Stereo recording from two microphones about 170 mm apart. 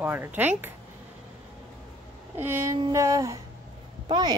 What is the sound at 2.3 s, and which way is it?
Speech, 15° right (ahead or behind).